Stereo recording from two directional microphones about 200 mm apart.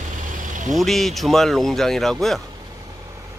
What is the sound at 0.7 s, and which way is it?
Speech, centre (ahead or behind).